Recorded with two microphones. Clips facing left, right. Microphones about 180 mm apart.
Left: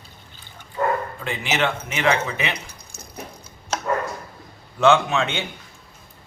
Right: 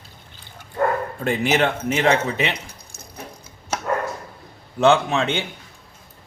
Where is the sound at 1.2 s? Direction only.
45° right (ahead or behind).